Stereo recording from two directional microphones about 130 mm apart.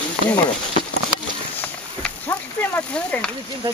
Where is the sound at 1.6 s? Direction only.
15° left (ahead or behind).